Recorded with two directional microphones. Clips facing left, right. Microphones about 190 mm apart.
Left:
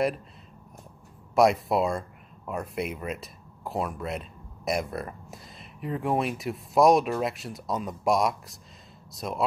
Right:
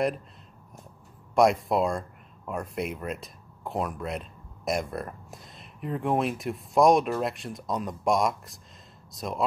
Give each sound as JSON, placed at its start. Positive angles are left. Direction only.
{"t": 1.3, "sound": "speech", "side_deg": 0}